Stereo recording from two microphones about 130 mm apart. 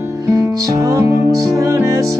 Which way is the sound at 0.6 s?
25° right (ahead or behind).